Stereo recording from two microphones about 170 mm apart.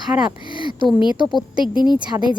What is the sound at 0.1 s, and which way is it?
Speech, 10° right (ahead or behind).